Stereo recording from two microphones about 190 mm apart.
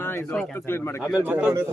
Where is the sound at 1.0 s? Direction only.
10° right (ahead or behind).